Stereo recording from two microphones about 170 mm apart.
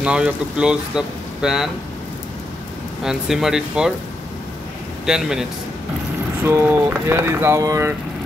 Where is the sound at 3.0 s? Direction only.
5° right (ahead or behind).